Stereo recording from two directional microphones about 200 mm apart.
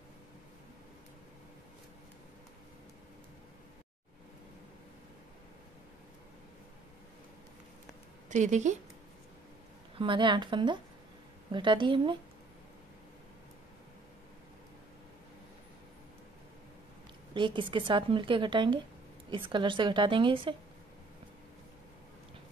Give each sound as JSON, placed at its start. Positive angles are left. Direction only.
{"t": 8.3, "sound": "speech", "side_deg": -35}
{"t": 9.9, "sound": "a woman's voice", "side_deg": -25}
{"t": 17.3, "sound": "a woman's voice", "side_deg": -25}